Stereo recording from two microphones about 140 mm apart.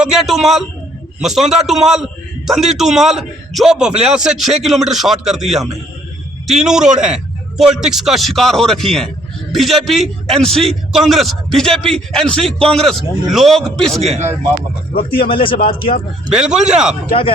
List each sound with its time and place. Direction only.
0.0 s a man's voice: centre (ahead or behind)
14.0 s speech: 50° right (ahead or behind)
15.1 s speech: 40° left (ahead or behind)
16.3 s a man's voice: 5° right (ahead or behind)